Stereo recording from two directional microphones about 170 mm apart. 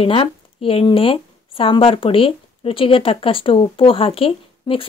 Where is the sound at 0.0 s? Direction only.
35° left (ahead or behind).